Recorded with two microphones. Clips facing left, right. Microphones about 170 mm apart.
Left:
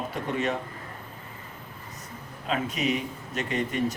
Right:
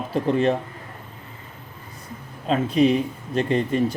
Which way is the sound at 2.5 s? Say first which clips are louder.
Right 9 dB; 30° right (ahead or behind).